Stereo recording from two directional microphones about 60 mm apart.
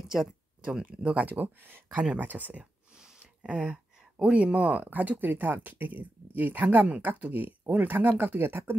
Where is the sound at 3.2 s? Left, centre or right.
Right.